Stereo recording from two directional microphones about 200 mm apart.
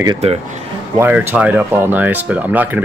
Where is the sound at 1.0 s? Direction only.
10° right (ahead or behind).